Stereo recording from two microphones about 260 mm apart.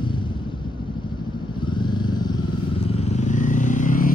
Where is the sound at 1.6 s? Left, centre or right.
Centre.